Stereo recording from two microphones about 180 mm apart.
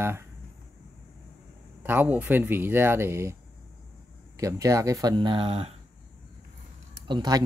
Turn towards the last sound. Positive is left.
turn(degrees=-25)  # may be behind; listen again after turning